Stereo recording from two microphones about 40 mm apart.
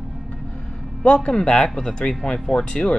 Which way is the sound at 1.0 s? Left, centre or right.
Left.